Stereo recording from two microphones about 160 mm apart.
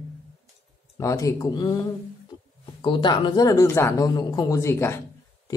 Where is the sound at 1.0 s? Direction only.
20° left (ahead or behind).